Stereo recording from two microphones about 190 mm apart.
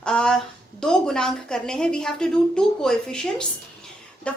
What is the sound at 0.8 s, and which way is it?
A woman's voice, 5° left (ahead or behind).